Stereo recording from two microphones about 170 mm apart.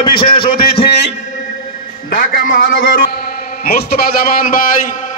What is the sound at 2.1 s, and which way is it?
A man's voice, 55° left (ahead or behind).